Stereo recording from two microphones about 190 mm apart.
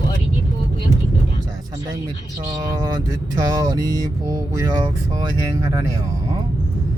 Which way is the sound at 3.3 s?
20° right (ahead or behind).